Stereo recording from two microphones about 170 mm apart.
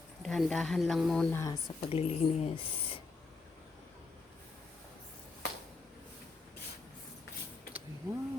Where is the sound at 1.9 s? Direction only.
35° left (ahead or behind).